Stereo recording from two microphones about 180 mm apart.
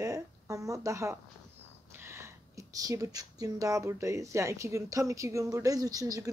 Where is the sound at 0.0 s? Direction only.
20° right (ahead or behind).